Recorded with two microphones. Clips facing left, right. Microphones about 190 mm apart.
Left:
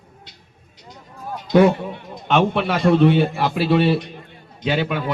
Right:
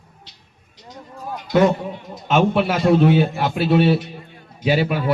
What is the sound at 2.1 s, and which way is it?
A man's voice, centre (ahead or behind).